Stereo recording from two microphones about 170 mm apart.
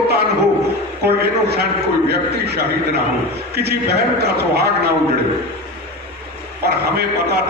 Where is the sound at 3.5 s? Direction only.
70° right (ahead or behind).